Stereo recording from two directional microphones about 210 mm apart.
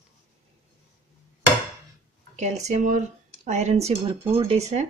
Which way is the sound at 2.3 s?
30° right (ahead or behind).